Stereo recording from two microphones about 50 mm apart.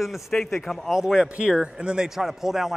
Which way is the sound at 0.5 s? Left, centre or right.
Centre.